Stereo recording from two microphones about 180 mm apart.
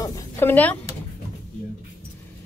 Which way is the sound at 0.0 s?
15° left (ahead or behind).